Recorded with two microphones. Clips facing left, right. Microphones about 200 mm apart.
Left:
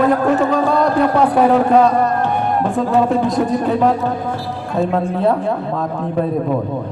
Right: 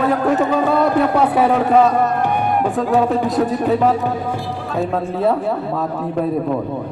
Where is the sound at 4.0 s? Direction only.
15° right (ahead or behind).